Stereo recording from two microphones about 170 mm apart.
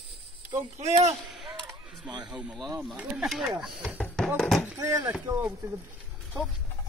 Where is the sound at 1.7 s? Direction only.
25° right (ahead or behind).